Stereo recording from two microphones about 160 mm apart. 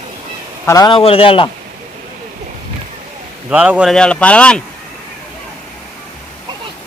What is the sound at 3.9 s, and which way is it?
Speech, 5° left (ahead or behind).